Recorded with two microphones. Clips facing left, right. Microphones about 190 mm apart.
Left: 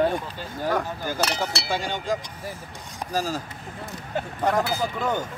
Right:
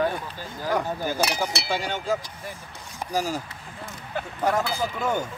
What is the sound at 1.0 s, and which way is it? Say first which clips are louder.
Speech: right 1 dB; 10° right (ahead or behind).